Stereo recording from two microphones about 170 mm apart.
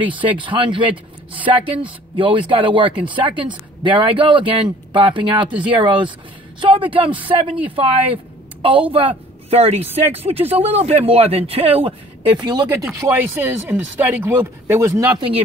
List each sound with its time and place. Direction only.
0.4 s speech: 30° right (ahead or behind)
5.5 s speech: 10° right (ahead or behind)
5.8 s a woman's voice: 30° right (ahead or behind)